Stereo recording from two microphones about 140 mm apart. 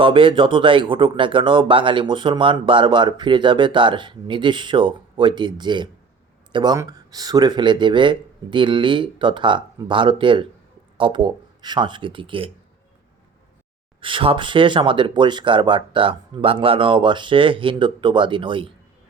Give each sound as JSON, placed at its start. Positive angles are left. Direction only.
{"t": 0.0, "sound": "speech", "side_deg": -35}
{"t": 14.0, "sound": "speech", "side_deg": -40}